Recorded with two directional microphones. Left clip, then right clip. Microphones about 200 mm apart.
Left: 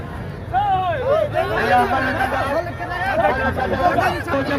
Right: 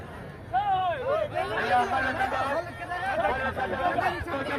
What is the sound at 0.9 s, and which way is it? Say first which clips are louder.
Speech: left 9 dB; 10° right (ahead or behind).